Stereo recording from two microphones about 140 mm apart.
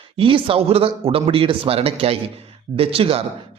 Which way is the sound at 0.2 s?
40° right (ahead or behind).